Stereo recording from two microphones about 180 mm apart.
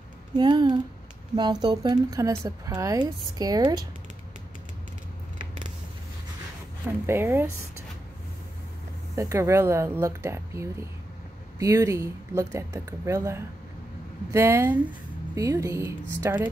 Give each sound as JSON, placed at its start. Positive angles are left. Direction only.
{"t": 0.4, "sound": "speech", "side_deg": -25}
{"t": 7.1, "sound": "speech", "side_deg": -15}
{"t": 9.1, "sound": "speech", "side_deg": -15}